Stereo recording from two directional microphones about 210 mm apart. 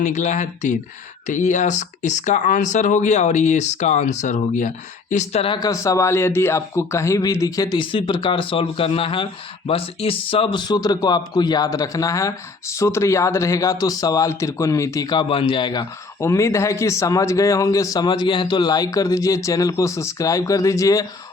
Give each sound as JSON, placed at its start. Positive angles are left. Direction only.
{"t": 0.0, "sound": "speech", "side_deg": 35}